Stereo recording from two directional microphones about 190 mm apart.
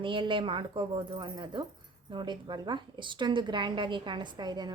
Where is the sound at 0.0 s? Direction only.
25° right (ahead or behind).